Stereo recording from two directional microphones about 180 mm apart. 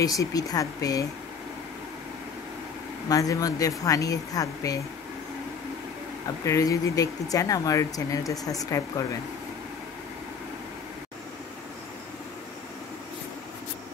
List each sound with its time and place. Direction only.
0.0 s speech: 20° left (ahead or behind)
3.1 s speech: 20° left (ahead or behind)
6.4 s speech: 20° left (ahead or behind)